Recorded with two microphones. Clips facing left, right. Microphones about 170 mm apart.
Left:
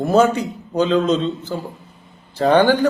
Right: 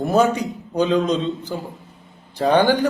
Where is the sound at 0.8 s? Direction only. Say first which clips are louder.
Left 2 dB; 15° right (ahead or behind).